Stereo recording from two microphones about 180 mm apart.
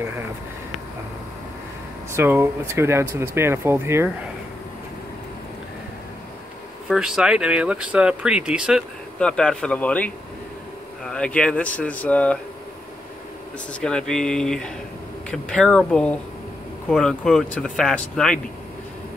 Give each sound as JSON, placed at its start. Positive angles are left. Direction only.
{"t": 2.1, "sound": "speech", "side_deg": -10}
{"t": 6.9, "sound": "speech", "side_deg": -5}
{"t": 13.7, "sound": "speech", "side_deg": 5}